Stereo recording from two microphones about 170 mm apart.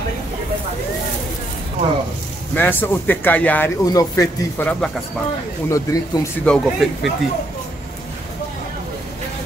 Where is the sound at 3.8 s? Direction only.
20° left (ahead or behind).